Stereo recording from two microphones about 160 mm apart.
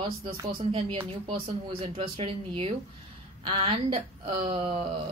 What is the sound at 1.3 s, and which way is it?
Speech, 35° right (ahead or behind).